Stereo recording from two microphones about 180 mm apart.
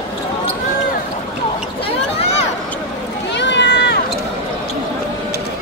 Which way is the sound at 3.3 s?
75° left (ahead or behind).